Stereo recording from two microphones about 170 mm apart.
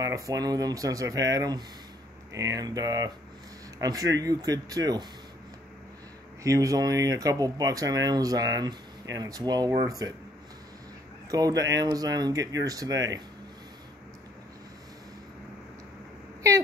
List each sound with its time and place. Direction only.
0.0 s speech: 20° right (ahead or behind)
6.4 s speech: 20° right (ahead or behind)
11.2 s speech: 20° right (ahead or behind)